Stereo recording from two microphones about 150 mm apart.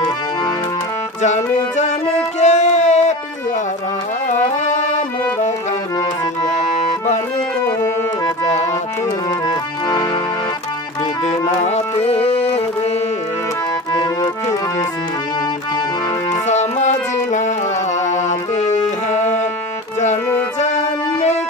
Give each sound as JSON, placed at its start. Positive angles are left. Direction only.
{"t": 1.2, "sound": "music", "side_deg": 50}
{"t": 4.3, "sound": "music", "side_deg": 55}
{"t": 9.5, "sound": "accordion", "side_deg": 25}
{"t": 11.2, "sound": "music", "side_deg": 50}
{"t": 16.4, "sound": "music", "side_deg": 50}
{"t": 20.6, "sound": "music", "side_deg": 50}